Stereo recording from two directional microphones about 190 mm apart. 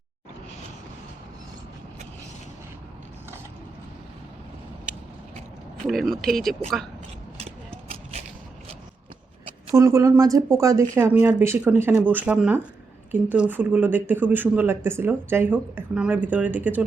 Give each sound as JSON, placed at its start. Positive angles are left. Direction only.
{"t": 5.9, "sound": "speech", "side_deg": 0}
{"t": 9.7, "sound": "speech", "side_deg": -15}